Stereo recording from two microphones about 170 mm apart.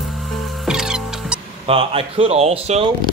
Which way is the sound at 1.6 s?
35° right (ahead or behind).